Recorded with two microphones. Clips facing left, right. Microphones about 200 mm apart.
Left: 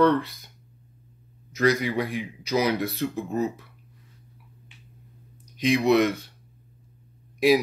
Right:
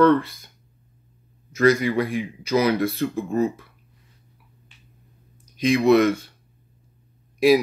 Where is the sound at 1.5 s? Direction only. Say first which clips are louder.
Right 4 dB; 15° left (ahead or behind).